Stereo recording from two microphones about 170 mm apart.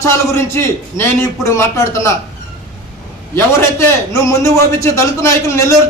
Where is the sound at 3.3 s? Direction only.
15° left (ahead or behind).